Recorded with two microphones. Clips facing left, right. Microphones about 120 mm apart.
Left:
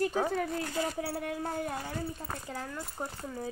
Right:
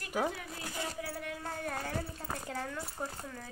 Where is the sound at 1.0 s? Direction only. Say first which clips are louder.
Left 6 dB; 35° left (ahead or behind).